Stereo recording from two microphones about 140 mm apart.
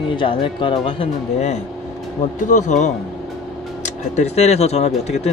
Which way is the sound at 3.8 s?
55° left (ahead or behind).